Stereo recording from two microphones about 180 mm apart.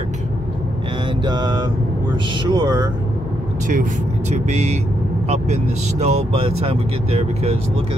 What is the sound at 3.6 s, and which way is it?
Speech, 45° right (ahead or behind).